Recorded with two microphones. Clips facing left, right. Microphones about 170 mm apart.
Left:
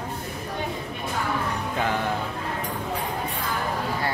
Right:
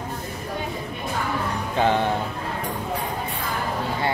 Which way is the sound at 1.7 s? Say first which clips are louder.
Right 7 dB; 30° right (ahead or behind).